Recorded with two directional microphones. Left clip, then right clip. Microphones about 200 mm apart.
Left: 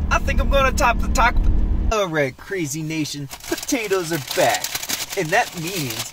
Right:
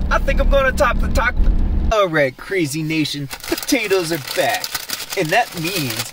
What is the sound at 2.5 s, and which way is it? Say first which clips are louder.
Speech: right 5 dB; 10° right (ahead or behind).